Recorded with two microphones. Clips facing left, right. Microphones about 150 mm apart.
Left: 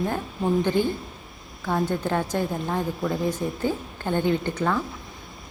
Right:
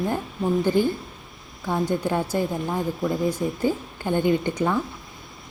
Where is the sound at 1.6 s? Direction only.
15° right (ahead or behind).